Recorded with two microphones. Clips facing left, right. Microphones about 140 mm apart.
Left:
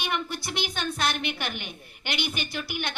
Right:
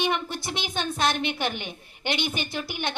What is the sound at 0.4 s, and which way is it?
A woman's voice, 25° right (ahead or behind).